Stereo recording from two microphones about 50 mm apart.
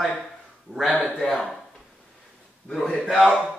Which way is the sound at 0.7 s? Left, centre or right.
Right.